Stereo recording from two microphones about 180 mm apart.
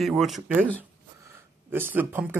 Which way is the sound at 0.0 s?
Centre (ahead or behind).